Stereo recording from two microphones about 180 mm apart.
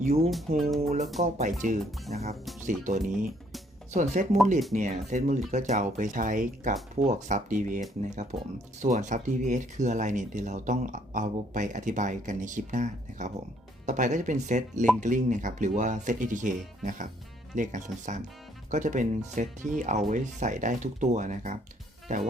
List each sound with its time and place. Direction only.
0.0 s speech: 35° right (ahead or behind)
0.3 s speech: centre (ahead or behind)
0.8 s speech: 35° right (ahead or behind)